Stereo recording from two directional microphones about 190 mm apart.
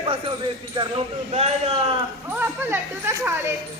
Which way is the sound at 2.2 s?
10° right (ahead or behind).